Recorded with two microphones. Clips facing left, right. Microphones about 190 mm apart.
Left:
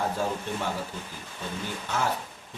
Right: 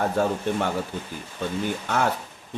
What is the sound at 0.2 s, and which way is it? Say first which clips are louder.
Speech: right 9 dB; 60° right (ahead or behind).